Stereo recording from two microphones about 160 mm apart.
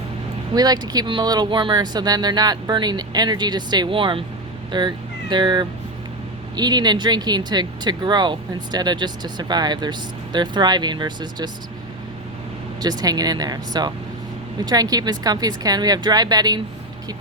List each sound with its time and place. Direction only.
0.5 s speech: 25° right (ahead or behind)
12.8 s speech: 25° right (ahead or behind)